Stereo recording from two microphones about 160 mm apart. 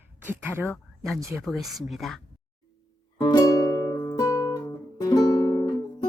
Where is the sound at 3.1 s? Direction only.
25° left (ahead or behind).